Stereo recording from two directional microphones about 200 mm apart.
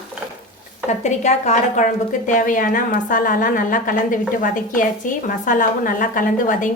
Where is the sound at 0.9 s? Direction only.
35° left (ahead or behind).